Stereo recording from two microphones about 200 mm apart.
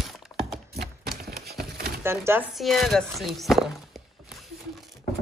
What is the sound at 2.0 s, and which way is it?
Speech, 10° right (ahead or behind).